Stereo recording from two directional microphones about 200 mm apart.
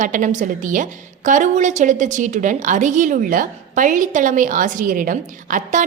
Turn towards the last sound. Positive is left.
turn(degrees=-40)  # may be behind; listen again after turning